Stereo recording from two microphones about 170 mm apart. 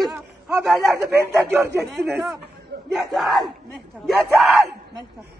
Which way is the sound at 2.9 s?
Centre (ahead or behind).